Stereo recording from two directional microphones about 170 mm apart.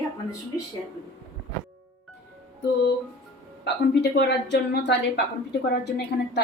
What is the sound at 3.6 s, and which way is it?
A woman's voice, 85° left.